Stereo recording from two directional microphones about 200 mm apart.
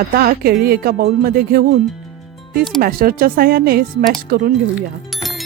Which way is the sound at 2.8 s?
45° right (ahead or behind).